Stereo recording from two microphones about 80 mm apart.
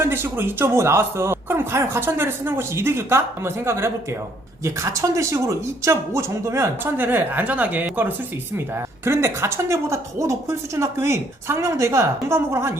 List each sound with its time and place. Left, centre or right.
0.0 s speech: right
9.0 s speech: right